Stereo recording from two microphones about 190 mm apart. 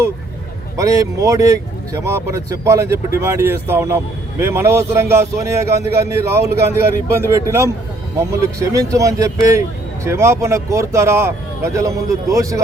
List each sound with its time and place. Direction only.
0.8 s speech: 15° right (ahead or behind)